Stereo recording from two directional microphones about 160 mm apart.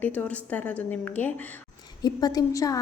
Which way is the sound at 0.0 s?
10° left (ahead or behind).